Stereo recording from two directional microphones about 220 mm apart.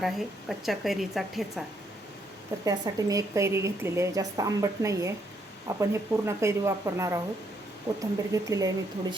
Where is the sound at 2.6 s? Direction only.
15° right (ahead or behind).